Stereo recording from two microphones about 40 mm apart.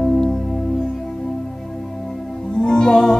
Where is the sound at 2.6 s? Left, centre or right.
Centre.